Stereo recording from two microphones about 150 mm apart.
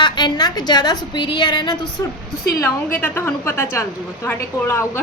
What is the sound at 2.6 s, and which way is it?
A woman's voice, 15° left (ahead or behind).